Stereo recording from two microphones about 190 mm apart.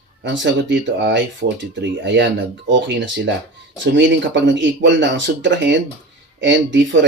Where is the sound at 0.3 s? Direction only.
70° right (ahead or behind).